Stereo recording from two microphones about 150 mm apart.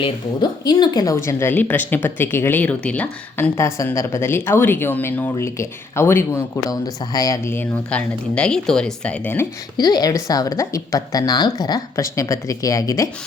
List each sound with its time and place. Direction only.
0.6 s speech: 25° left (ahead or behind)
9.7 s a woman's voice: 25° left (ahead or behind)